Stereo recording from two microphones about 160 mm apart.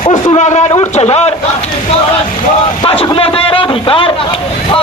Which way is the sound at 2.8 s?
35° left (ahead or behind).